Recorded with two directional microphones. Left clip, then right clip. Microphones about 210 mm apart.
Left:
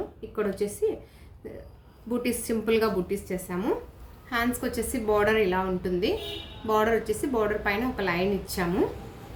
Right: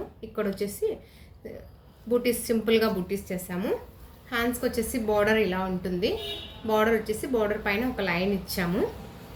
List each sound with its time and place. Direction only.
0.3 s a woman's voice: 30° left (ahead or behind)
2.2 s a woman's voice: 30° left (ahead or behind)